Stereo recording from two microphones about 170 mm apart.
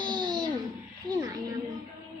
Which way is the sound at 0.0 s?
25° right (ahead or behind).